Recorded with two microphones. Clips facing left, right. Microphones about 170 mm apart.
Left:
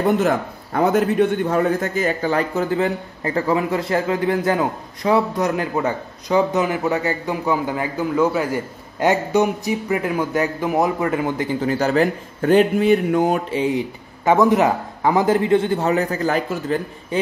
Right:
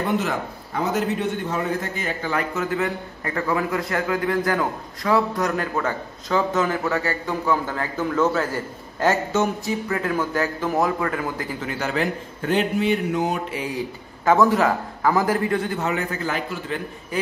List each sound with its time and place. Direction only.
0.7 s a man's voice: 55° left (ahead or behind)
13.5 s a man's voice: 25° left (ahead or behind); by 16.8 s 40° left (ahead or behind)